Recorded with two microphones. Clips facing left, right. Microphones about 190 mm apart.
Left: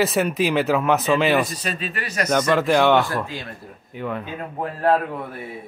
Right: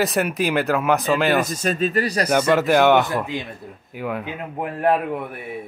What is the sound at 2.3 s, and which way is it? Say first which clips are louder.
Speech: left 1 dB; 5° right (ahead or behind).